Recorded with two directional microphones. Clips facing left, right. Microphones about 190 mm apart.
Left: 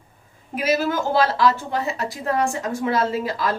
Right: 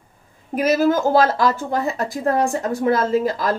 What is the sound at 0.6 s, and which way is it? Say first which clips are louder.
A woman's voice: right 5 dB; 45° right (ahead or behind).